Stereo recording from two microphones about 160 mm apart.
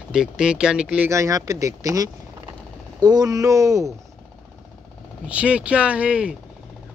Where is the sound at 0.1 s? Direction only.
5° right (ahead or behind).